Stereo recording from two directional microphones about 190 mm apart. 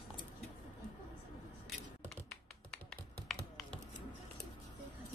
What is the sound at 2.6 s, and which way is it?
Computer keyboard, 5° left (ahead or behind).